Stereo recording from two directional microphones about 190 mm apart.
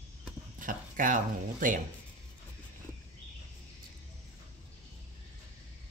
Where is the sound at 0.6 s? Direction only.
45° right (ahead or behind).